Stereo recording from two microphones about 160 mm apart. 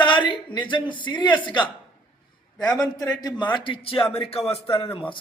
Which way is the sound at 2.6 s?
25° left (ahead or behind).